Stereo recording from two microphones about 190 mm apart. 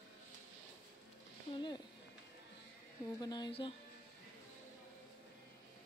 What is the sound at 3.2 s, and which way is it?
Speech, 20° left (ahead or behind).